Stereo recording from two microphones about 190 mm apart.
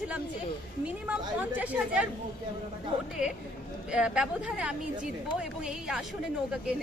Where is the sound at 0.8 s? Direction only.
5° right (ahead or behind).